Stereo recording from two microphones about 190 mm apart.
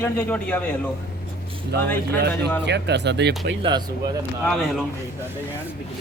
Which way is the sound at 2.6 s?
65° right (ahead or behind).